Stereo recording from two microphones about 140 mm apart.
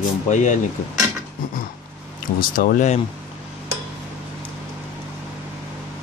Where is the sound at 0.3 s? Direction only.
60° left (ahead or behind).